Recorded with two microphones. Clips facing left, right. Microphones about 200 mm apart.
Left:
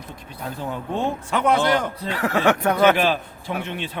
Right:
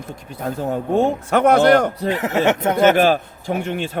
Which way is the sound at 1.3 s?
65° right (ahead or behind).